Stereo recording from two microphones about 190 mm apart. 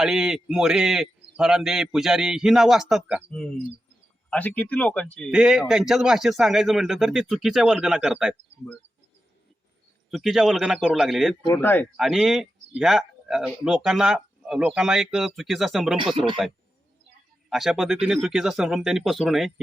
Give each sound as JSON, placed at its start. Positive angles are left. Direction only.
{"t": 0.0, "sound": "speech", "side_deg": -5}
{"t": 4.3, "sound": "speech", "side_deg": 10}
{"t": 5.3, "sound": "speech", "side_deg": -5}
{"t": 10.1, "sound": "speech", "side_deg": 0}
{"t": 11.5, "sound": "speech", "side_deg": 10}
{"t": 11.9, "sound": "speech", "side_deg": 0}
{"t": 16.1, "sound": "speech", "side_deg": -25}
{"t": 17.5, "sound": "speech", "side_deg": 0}